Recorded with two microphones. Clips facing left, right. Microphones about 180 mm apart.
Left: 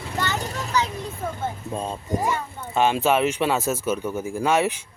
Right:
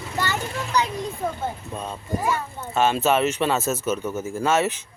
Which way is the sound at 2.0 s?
15° left (ahead or behind).